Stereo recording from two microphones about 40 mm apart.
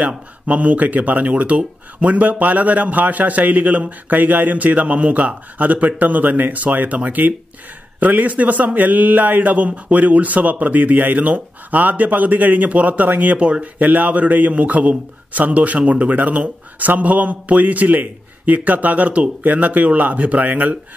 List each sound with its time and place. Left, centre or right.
0.5 s a man's voice: right
13.4 s a man's voice: right